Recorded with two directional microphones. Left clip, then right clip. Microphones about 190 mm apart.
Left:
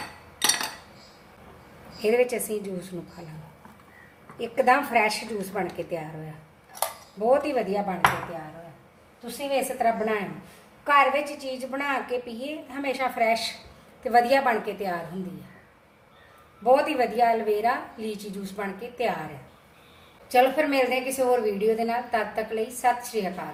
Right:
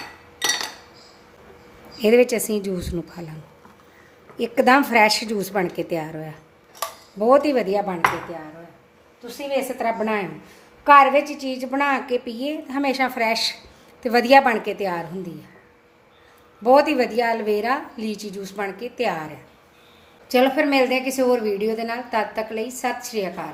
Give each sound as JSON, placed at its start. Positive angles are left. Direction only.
{"t": 2.0, "sound": "a woman's voice", "side_deg": -60}
{"t": 4.4, "sound": "a woman's voice", "side_deg": -55}
{"t": 7.3, "sound": "a woman's voice", "side_deg": -55}
{"t": 9.2, "sound": "a woman's voice", "side_deg": -40}
{"t": 16.6, "sound": "a woman's voice", "side_deg": -55}
{"t": 20.2, "sound": "a woman's voice", "side_deg": -55}